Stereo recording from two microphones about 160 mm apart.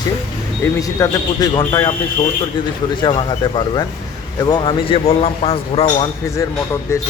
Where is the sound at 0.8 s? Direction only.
25° left (ahead or behind).